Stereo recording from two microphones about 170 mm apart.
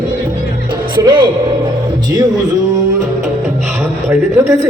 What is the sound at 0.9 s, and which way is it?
Speech, 25° right (ahead or behind).